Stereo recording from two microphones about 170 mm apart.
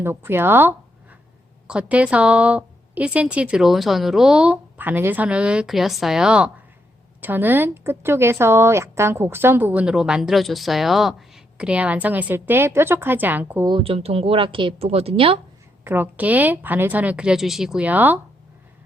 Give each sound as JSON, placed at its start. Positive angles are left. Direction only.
{"t": 0.0, "sound": "a woman's voice", "side_deg": -15}
{"t": 13.7, "sound": "a woman's voice", "side_deg": -30}
{"t": 15.8, "sound": "speech", "side_deg": -10}